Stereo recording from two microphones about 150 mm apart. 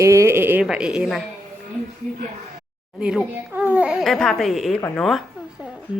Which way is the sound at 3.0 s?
5° right (ahead or behind).